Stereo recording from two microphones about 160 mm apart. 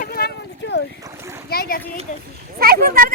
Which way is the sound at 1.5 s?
70° left (ahead or behind).